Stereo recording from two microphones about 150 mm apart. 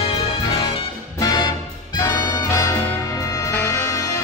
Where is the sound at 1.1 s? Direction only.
25° left (ahead or behind).